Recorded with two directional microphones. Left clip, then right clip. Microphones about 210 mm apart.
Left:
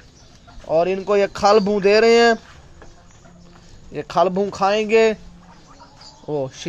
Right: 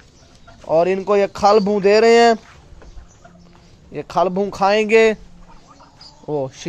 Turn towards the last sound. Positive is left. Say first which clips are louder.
# right 1 dB
turn(degrees=-15)  # may be behind; listen again after turning